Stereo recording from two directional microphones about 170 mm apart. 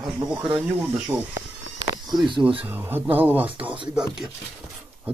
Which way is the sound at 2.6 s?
10° right (ahead or behind).